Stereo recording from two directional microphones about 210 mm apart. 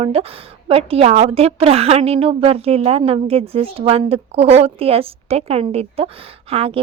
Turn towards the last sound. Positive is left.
turn(degrees=-25)  # may be behind; listen again after turning